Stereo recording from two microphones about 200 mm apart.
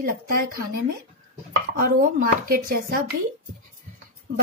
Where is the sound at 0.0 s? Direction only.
45° right (ahead or behind).